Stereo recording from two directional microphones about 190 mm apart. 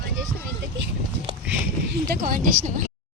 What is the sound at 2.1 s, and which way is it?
Speech, 50° right (ahead or behind).